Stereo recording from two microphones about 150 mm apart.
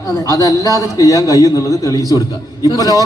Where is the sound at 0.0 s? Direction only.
20° left (ahead or behind).